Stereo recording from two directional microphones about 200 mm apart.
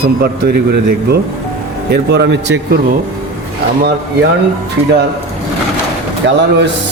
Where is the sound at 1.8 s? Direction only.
55° right (ahead or behind).